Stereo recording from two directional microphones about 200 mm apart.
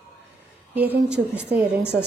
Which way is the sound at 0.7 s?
10° right (ahead or behind).